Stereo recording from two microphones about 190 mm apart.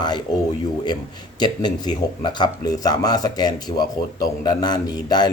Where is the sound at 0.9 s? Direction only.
20° left (ahead or behind).